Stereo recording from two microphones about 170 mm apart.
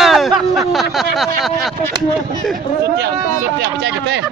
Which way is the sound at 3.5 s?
90° right.